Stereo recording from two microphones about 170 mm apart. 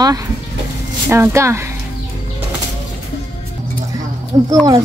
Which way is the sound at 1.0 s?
15° right (ahead or behind).